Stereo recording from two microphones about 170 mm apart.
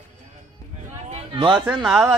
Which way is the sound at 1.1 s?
30° right (ahead or behind).